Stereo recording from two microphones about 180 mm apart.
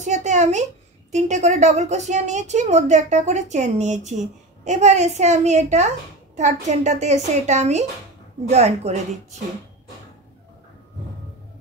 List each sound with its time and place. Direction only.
0.0 s a woman's voice: 40° right (ahead or behind)